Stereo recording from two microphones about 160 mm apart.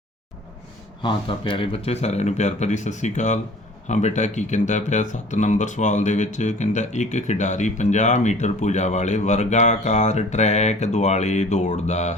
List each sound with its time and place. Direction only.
1.0 s speech: 30° left (ahead or behind)